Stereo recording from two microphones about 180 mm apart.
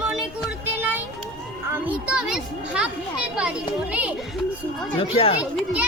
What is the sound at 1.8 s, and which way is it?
A child's voice, 5° right (ahead or behind).